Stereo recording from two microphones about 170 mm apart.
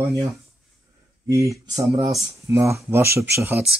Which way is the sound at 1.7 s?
20° right (ahead or behind).